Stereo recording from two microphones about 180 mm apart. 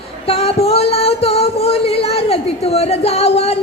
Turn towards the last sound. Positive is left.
turn(degrees=35)  # may be behind; listen again after turning